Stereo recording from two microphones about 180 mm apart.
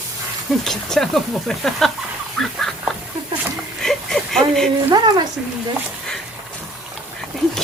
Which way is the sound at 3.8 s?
Centre (ahead or behind).